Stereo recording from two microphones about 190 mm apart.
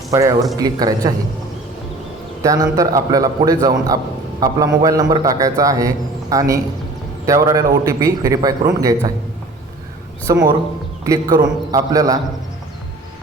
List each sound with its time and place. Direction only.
0.1 s a man's voice: 15° right (ahead or behind)
2.4 s a man's voice: 20° right (ahead or behind)
10.3 s a man's voice: 20° right (ahead or behind)